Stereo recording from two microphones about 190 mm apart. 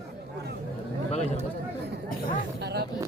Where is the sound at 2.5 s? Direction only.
60° right (ahead or behind).